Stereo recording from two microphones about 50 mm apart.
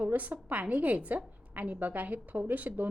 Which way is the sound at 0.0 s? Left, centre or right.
Right.